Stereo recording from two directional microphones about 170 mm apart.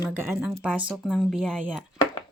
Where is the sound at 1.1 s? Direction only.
5° left (ahead or behind).